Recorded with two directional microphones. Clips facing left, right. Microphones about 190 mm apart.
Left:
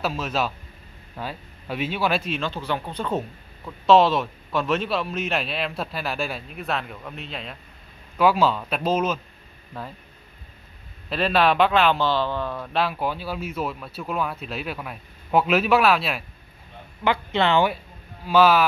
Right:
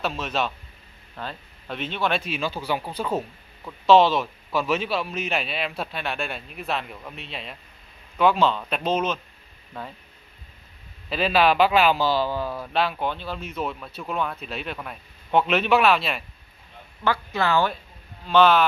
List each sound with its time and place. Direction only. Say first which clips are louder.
0.0 s speech: left 1 dB; 5° left (ahead or behind)
11.1 s speech: even; centre (ahead or behind)
17.0 s speech: left 2 dB; 20° left (ahead or behind)
18.2 s speech: even; 5° left (ahead or behind)